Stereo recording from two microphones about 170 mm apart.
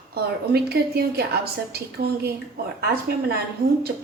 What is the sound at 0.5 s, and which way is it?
A woman's voice, 70° right (ahead or behind).